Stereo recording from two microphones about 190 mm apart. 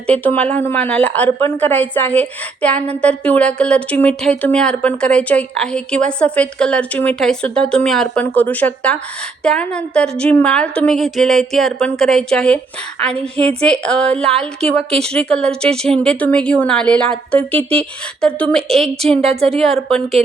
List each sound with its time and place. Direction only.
0.1 s a woman's voice: 5° left (ahead or behind)
13.6 s a woman's voice: 5° left (ahead or behind)
19.2 s a woman's voice: 35° right (ahead or behind)
19.5 s a woman's voice: centre (ahead or behind)